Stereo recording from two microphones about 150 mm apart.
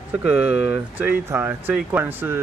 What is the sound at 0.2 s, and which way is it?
Speech, 5° right (ahead or behind).